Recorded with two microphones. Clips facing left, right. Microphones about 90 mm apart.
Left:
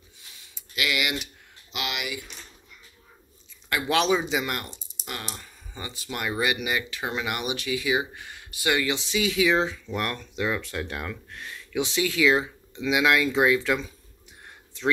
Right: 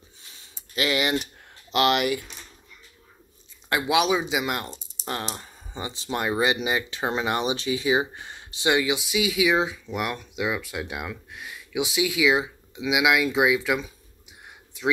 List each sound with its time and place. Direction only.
0.4 s a sound: 35° right (ahead or behind)
1.7 s speech: 50° right (ahead or behind)
3.8 s speech: 10° right (ahead or behind)
5.2 s speech: 30° right (ahead or behind); by 14.9 s 10° right (ahead or behind)